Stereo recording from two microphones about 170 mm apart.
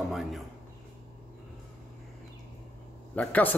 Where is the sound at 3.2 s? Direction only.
10° left (ahead or behind).